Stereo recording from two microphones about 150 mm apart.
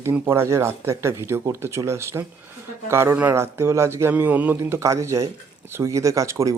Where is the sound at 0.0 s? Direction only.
15° right (ahead or behind).